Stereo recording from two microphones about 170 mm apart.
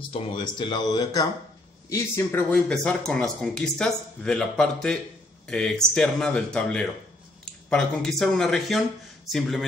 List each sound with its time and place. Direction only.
0.1 s speech: 25° left (ahead or behind); by 9.7 s centre (ahead or behind)